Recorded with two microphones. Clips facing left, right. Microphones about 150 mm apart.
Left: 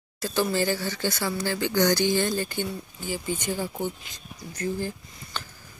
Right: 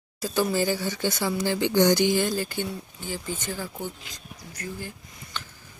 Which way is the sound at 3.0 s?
15° left (ahead or behind).